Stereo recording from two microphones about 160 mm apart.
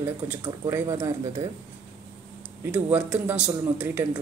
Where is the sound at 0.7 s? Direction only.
20° right (ahead or behind).